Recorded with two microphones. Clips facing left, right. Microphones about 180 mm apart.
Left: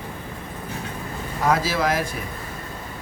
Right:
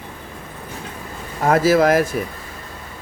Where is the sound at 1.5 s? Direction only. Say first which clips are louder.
Right 8 dB; 50° right (ahead or behind).